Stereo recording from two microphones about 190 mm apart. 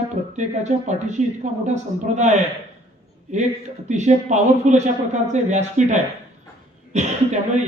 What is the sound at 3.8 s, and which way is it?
A man's voice, 40° right (ahead or behind).